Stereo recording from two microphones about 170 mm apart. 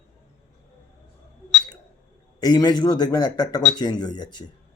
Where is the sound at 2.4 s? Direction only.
25° left (ahead or behind).